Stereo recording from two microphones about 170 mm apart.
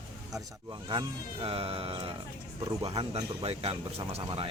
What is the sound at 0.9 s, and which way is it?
Speech, 30° right (ahead or behind).